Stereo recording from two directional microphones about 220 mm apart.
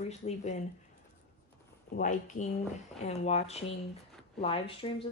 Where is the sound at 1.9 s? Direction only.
35° left (ahead or behind).